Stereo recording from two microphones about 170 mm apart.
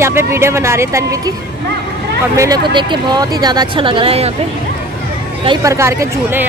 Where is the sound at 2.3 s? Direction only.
20° right (ahead or behind).